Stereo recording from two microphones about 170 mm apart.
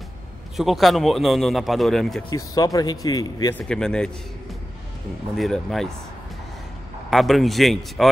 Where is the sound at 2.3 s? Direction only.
20° left (ahead or behind).